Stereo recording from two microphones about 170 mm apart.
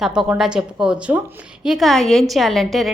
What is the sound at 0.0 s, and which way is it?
A woman's voice, 5° right (ahead or behind).